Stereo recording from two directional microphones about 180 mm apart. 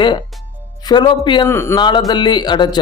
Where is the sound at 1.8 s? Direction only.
25° left (ahead or behind).